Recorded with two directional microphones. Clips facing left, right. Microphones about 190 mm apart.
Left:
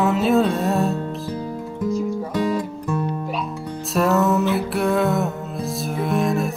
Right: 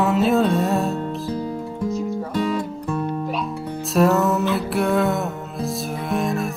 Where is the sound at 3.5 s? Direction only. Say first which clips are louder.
Right 1 dB; 10° right (ahead or behind).